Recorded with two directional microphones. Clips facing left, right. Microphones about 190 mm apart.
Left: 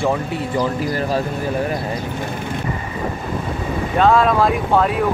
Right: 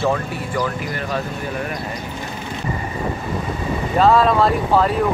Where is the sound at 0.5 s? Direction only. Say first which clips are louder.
Left 3 dB; 30° left (ahead or behind).